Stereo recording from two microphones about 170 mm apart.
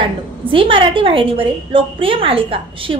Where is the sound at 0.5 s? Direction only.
30° right (ahead or behind).